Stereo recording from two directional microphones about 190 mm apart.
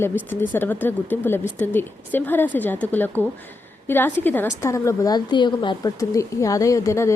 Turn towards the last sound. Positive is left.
turn(degrees=15)  # may be behind; listen again after turning